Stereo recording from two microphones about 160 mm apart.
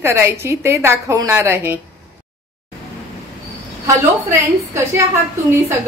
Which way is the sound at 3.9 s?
15° right (ahead or behind).